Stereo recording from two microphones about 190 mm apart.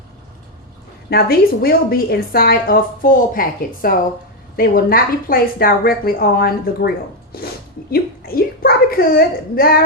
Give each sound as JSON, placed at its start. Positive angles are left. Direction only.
{"t": 1.1, "sound": "a woman's voice", "side_deg": 50}